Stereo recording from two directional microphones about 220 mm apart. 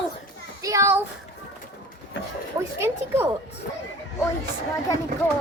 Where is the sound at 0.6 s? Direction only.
15° right (ahead or behind).